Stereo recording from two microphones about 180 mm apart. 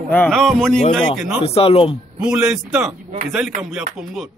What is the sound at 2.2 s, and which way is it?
Speech, 5° right (ahead or behind).